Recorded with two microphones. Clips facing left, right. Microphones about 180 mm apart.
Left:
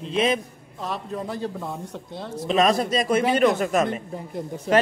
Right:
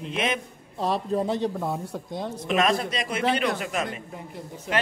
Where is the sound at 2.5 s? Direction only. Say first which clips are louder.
Left 4 dB; 40° left (ahead or behind).